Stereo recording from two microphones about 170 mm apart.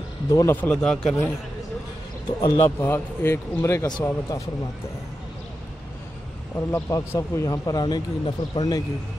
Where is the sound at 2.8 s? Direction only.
15° left (ahead or behind).